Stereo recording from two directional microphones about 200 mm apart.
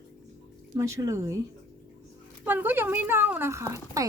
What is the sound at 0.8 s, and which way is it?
Speech, 15° right (ahead or behind).